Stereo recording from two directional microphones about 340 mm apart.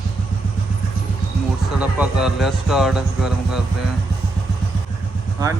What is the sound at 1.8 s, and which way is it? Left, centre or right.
Speech, centre.